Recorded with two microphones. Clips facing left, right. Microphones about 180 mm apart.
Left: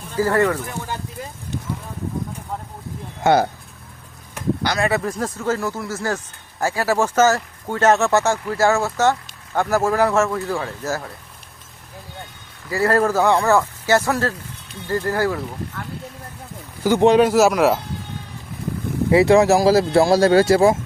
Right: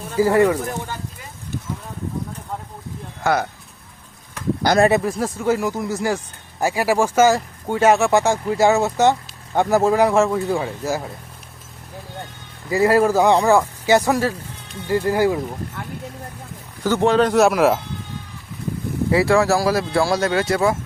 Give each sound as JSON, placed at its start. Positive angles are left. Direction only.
{"t": 0.2, "sound": "speech", "side_deg": -15}
{"t": 3.2, "sound": "speech", "side_deg": 30}
{"t": 4.6, "sound": "speech", "side_deg": -45}
{"t": 5.0, "sound": "speech", "side_deg": -10}
{"t": 12.7, "sound": "speech", "side_deg": -15}
{"t": 16.8, "sound": "speech", "side_deg": 15}
{"t": 17.2, "sound": "speech", "side_deg": 0}
{"t": 19.1, "sound": "speech", "side_deg": 20}